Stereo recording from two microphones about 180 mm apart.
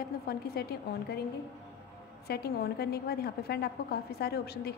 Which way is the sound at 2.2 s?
60° left (ahead or behind).